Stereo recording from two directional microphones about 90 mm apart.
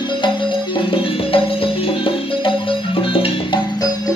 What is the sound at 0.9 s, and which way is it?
Music, 90° left.